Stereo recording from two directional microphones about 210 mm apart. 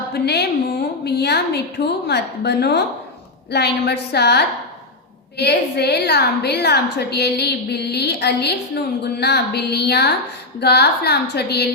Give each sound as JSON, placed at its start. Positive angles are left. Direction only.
{"t": 0.1, "sound": "a woman's voice", "side_deg": 50}